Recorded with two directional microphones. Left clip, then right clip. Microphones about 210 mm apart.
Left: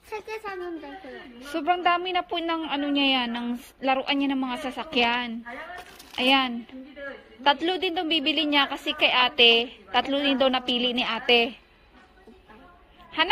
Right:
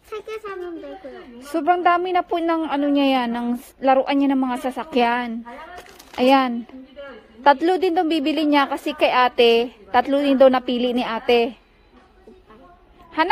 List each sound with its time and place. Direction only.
0.1 s a sound: 5° left (ahead or behind)
1.5 s a woman's voice: 15° right (ahead or behind)
7.6 s a woman's voice: 20° right (ahead or behind)